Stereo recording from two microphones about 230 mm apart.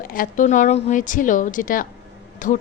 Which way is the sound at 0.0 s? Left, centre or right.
Left.